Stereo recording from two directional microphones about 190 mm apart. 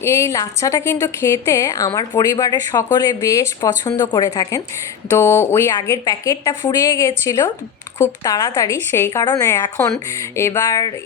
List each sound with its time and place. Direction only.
0.0 s a woman's voice: 15° left (ahead or behind)